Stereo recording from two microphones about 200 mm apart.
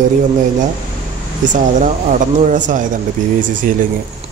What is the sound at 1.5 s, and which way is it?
Speech, 40° right (ahead or behind).